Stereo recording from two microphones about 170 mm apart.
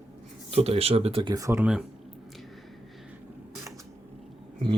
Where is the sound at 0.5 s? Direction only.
35° right (ahead or behind); by 1.6 s 20° right (ahead or behind).